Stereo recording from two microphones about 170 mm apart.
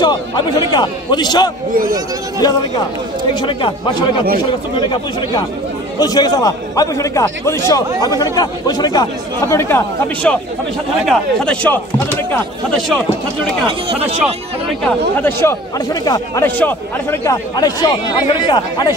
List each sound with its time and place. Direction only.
0.0 s a man's voice: 25° left (ahead or behind)
3.3 s a man's voice: 30° left (ahead or behind)
11.1 s a man's voice: 5° left (ahead or behind)
13.7 s speech: 35° right (ahead or behind)
14.9 s speech: 10° left (ahead or behind)
16.4 s a man's voice: 10° left (ahead or behind)